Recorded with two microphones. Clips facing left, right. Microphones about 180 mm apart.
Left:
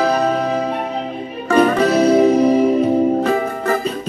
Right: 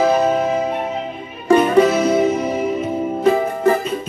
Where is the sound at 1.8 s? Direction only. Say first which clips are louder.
Left 3 dB; 35° left (ahead or behind).